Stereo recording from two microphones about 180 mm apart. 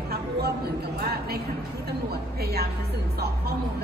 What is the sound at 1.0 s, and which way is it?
Music, 60° right (ahead or behind).